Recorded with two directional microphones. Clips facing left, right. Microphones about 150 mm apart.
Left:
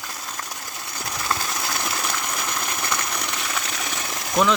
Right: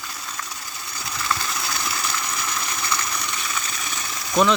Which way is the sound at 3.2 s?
80° left.